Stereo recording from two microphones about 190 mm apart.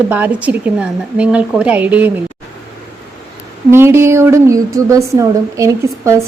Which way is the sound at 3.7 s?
15° right (ahead or behind).